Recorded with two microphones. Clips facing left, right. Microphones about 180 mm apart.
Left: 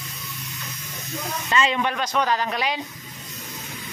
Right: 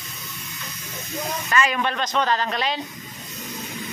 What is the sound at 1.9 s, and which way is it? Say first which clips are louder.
Speech: even; 10° left (ahead or behind).